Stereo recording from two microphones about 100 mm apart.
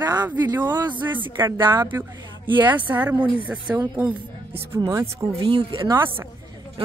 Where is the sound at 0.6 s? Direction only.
20° right (ahead or behind).